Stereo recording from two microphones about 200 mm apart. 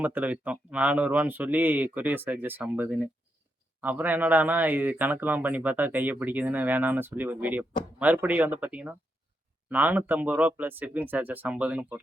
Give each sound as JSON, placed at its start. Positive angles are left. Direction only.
{"t": 0.0, "sound": "speech", "side_deg": -10}